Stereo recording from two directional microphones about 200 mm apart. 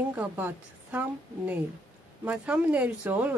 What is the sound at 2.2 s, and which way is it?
Speech, 5° right (ahead or behind).